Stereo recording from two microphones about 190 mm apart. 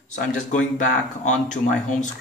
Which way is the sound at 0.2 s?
40° left (ahead or behind).